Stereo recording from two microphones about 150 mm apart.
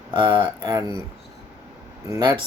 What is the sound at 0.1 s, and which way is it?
Speech, 30° right (ahead or behind).